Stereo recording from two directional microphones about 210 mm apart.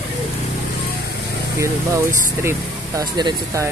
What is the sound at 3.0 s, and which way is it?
Speech, 20° right (ahead or behind).